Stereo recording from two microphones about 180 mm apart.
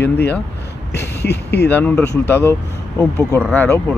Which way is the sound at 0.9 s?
65° left (ahead or behind).